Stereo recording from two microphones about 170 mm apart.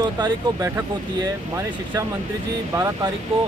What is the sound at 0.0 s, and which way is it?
Speech, 20° right (ahead or behind).